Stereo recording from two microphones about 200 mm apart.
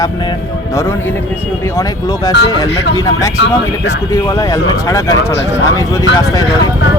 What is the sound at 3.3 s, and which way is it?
Speech, 65° left (ahead or behind).